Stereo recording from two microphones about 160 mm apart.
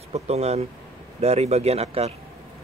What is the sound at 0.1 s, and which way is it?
Speech, 40° right (ahead or behind).